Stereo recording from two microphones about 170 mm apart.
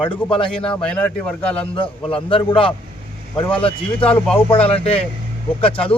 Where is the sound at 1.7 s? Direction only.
30° left (ahead or behind).